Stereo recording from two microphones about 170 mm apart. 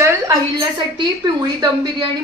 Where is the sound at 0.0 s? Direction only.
15° right (ahead or behind).